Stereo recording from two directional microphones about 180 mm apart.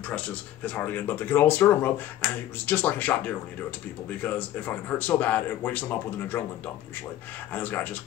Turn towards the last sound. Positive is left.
turn(degrees=10)  # may be behind; listen again after turning